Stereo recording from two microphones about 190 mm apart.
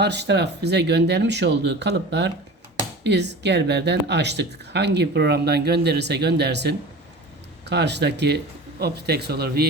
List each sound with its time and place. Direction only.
0.0 s speech: 65° right (ahead or behind)